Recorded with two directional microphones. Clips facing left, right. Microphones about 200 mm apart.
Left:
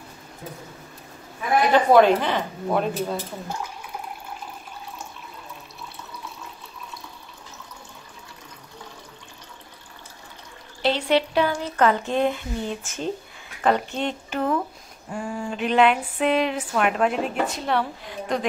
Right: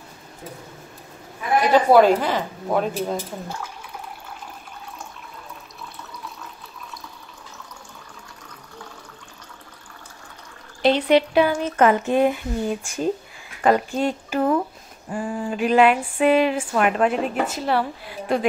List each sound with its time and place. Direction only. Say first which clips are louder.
1.7 s speech: right 2 dB; 10° right (ahead or behind)
10.8 s speech: right 4 dB; 15° right (ahead or behind)
15.0 s a sound: right 3 dB; 5° right (ahead or behind)